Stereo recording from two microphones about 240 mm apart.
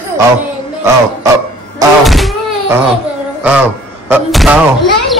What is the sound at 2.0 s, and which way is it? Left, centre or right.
Speech, centre.